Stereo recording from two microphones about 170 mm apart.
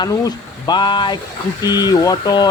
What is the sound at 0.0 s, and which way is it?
Speech, 25° left (ahead or behind).